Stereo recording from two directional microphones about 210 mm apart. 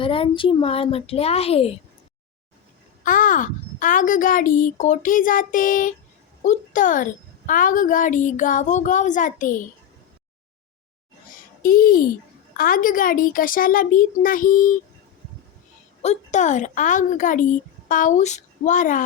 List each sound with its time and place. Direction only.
0.0 s a woman's voice: 25° left (ahead or behind)
3.0 s a child's voice: 40° left (ahead or behind)
11.6 s a child's voice: 40° left (ahead or behind)
16.0 s a child's voice: 35° left (ahead or behind)